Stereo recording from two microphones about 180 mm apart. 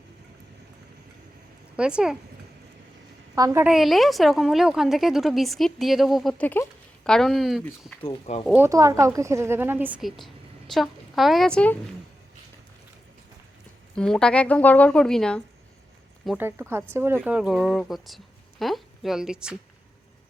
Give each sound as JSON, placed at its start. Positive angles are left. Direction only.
{"t": 1.7, "sound": "speech", "side_deg": -5}
{"t": 3.3, "sound": "a woman's voice", "side_deg": -15}
{"t": 3.7, "sound": "a woman's voice", "side_deg": 0}
{"t": 8.0, "sound": "speech", "side_deg": 35}
{"t": 8.5, "sound": "a woman's voice", "side_deg": -15}
{"t": 13.9, "sound": "a woman's voice", "side_deg": 5}
{"t": 16.4, "sound": "a woman's voice", "side_deg": -15}